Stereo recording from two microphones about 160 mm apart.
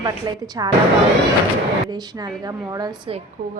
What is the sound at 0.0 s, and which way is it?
Speech, 25° right (ahead or behind).